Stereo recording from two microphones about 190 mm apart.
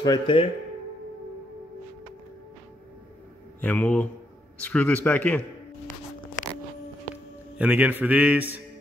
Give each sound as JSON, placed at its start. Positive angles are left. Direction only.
{"t": 0.0, "sound": "speech", "side_deg": 25}
{"t": 3.6, "sound": "a man's voice", "side_deg": 10}
{"t": 7.5, "sound": "a man's voice", "side_deg": -10}